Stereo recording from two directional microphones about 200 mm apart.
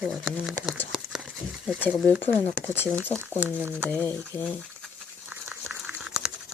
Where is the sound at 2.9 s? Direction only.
5° left (ahead or behind).